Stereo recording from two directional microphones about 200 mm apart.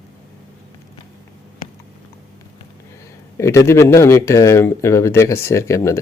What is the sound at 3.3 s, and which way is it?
Speech, 15° left (ahead or behind).